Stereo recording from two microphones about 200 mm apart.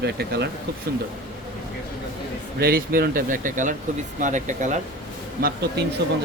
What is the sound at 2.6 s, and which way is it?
Speech, 50° right (ahead or behind).